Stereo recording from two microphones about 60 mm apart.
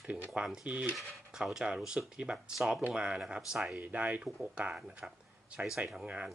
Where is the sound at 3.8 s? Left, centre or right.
Right.